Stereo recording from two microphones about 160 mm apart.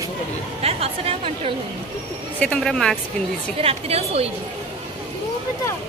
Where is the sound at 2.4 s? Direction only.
5° left (ahead or behind).